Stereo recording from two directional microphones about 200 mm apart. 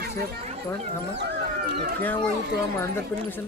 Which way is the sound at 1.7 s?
50° right (ahead or behind).